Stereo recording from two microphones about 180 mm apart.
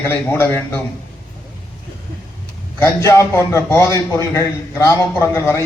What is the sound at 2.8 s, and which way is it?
A man's voice, 15° left (ahead or behind).